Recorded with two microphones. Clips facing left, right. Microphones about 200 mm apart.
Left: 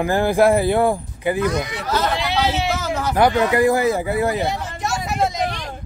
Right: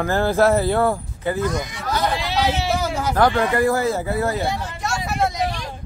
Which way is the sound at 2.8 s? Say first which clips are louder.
Even; 10° right (ahead or behind).